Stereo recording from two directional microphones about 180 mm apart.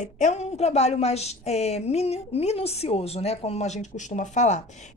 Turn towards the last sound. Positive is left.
turn(degrees=40)  # may be behind; listen again after turning